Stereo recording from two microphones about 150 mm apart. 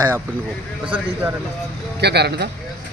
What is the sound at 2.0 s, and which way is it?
Speech, 90° right.